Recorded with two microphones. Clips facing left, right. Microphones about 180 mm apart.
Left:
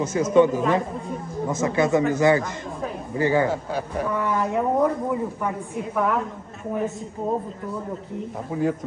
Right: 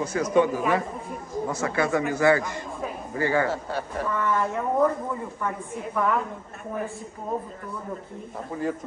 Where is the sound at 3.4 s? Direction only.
Centre (ahead or behind).